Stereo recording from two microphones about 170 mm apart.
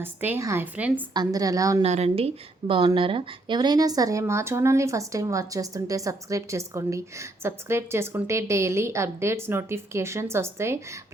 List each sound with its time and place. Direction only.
0.0 s speech: 10° right (ahead or behind)
1.1 s a woman's voice: 25° right (ahead or behind)
1.8 s speech: 40° right (ahead or behind); by 10.8 s 15° right (ahead or behind)